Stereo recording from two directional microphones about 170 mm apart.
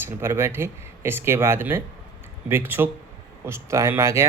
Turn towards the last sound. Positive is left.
turn(degrees=-15)  # may be behind; listen again after turning